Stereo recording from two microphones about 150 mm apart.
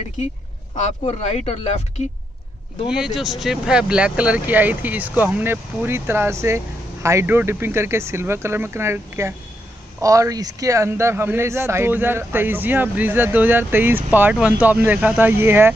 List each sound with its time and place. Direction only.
1.0 s speech: 40° left (ahead or behind)
2.9 s speech: 5° right (ahead or behind)